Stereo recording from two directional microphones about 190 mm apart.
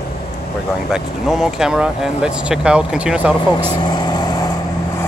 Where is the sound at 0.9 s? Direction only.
Centre (ahead or behind).